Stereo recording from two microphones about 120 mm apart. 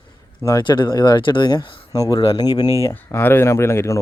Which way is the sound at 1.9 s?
30° left (ahead or behind).